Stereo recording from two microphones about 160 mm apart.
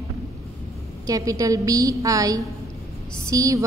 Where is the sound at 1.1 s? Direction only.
20° right (ahead or behind).